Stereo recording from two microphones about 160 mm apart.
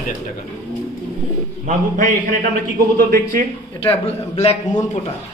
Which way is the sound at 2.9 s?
70° right (ahead or behind).